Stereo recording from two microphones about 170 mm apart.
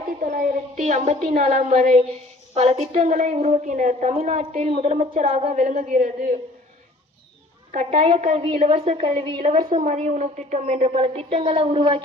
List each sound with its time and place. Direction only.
0.2 s a woman's voice: 50° right (ahead or behind)
7.7 s a woman's voice: 45° right (ahead or behind)
9.6 s a woman's voice: 50° right (ahead or behind); by 12.0 s 30° right (ahead or behind)